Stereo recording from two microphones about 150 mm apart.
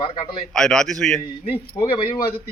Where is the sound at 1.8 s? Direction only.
35° left (ahead or behind).